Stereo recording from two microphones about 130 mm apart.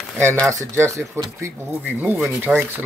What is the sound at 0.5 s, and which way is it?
Speech, 25° right (ahead or behind).